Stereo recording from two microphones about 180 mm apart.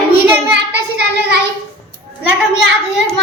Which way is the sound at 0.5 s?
70° right (ahead or behind).